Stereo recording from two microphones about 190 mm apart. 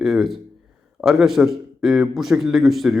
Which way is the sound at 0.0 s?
Centre (ahead or behind).